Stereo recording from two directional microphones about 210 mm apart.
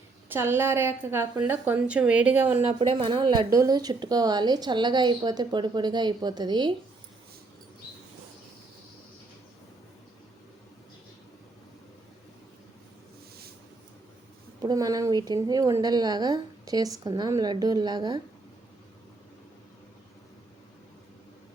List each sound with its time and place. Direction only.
0.3 s a woman's voice: 10° right (ahead or behind)
2.6 s speech: 30° right (ahead or behind)
14.6 s speech: 20° right (ahead or behind)